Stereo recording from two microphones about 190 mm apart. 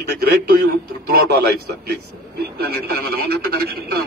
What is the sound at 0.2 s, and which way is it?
Speech, 55° right (ahead or behind).